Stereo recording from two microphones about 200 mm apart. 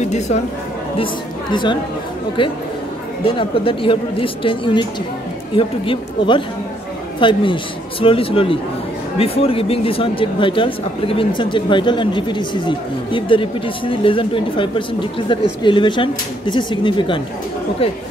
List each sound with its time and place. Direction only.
0.0 s speech: 35° left (ahead or behind)
1.5 s speech: 25° left (ahead or behind)
3.3 s speech: 25° left (ahead or behind)